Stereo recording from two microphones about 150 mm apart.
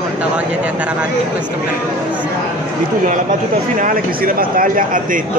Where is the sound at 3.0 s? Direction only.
60° right (ahead or behind).